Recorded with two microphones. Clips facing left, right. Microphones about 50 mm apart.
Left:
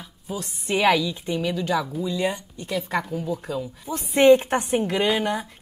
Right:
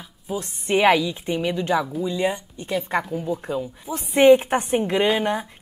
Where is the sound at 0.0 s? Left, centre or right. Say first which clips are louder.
Right 3 dB; centre.